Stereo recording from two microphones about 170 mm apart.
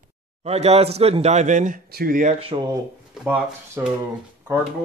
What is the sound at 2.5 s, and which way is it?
Speech, 30° right (ahead or behind).